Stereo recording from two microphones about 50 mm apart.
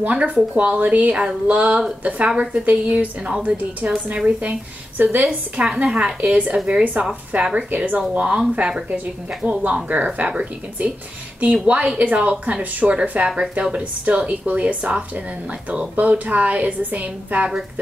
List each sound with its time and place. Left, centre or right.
0.1 s a woman's voice: right
5.6 s a woman's voice: centre
6.8 s a woman's voice: right
7.1 s speech: centre
7.5 s a woman's voice: right
8.5 s a woman's voice: centre